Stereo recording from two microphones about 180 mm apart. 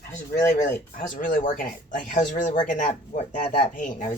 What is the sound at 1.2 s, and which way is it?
Speech, 50° left (ahead or behind).